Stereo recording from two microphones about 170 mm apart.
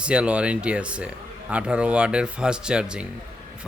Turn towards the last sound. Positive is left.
turn(degrees=-5)  # may be behind; listen again after turning